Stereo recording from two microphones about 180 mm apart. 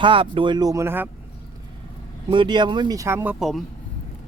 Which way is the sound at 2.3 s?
25° right (ahead or behind).